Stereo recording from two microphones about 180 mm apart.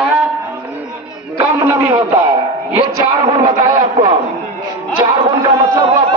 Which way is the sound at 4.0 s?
25° right (ahead or behind).